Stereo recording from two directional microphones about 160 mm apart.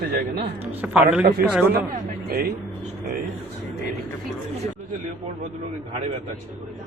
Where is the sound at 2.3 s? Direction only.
65° right (ahead or behind).